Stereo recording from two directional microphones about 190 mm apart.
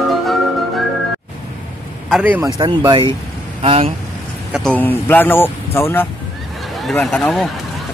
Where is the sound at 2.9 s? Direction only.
25° right (ahead or behind).